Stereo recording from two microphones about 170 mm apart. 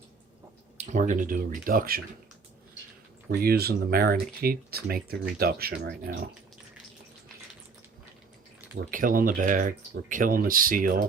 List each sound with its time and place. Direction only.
0.8 s speech: 45° right (ahead or behind)
3.2 s speech: 65° right (ahead or behind)
8.7 s speech: 55° right (ahead or behind)